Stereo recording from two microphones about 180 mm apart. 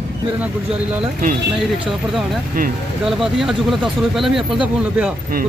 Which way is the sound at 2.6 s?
50° right (ahead or behind).